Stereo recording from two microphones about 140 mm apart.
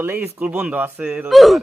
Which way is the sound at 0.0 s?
15° right (ahead or behind).